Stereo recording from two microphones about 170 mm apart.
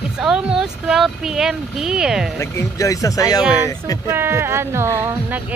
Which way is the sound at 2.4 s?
15° left (ahead or behind).